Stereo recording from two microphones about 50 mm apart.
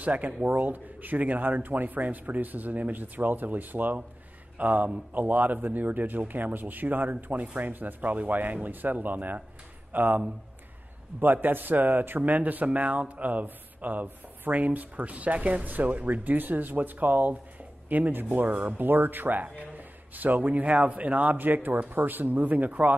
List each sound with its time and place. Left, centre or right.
0.0 s speech: right
11.4 s speech: right